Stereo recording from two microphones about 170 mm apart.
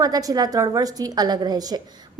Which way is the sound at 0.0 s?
20° right (ahead or behind).